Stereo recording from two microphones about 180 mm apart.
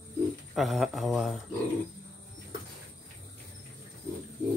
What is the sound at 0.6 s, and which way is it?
Speech, centre (ahead or behind).